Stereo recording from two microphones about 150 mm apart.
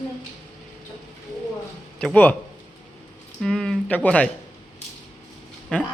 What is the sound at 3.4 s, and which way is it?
Speech, 5° left (ahead or behind).